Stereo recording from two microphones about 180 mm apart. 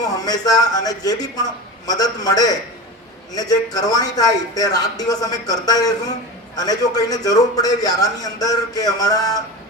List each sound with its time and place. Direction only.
0.0 s a man's voice: 20° left (ahead or behind)